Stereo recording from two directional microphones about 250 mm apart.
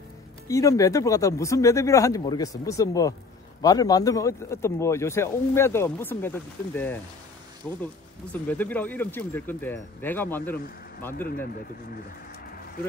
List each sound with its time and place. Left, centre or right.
0.5 s speech: centre
11.1 s speech: left